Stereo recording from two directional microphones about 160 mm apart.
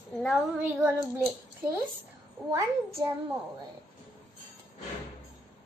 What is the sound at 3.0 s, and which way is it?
Speech, 25° right (ahead or behind).